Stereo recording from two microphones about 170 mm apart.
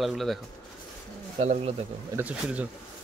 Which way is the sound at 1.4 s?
40° right (ahead or behind).